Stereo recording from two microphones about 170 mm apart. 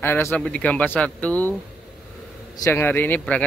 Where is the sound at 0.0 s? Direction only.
15° left (ahead or behind).